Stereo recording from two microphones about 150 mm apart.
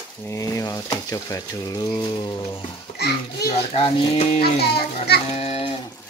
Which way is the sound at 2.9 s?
90° left.